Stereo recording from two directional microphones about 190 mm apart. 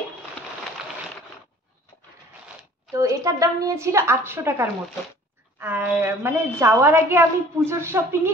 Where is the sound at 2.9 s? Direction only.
15° right (ahead or behind).